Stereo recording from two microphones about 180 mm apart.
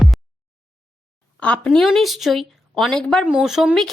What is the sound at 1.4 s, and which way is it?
A woman's voice, 5° left (ahead or behind).